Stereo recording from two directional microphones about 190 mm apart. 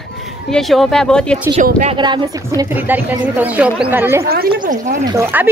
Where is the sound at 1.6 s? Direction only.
35° right (ahead or behind).